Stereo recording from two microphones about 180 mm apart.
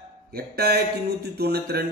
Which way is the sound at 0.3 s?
60° right (ahead or behind).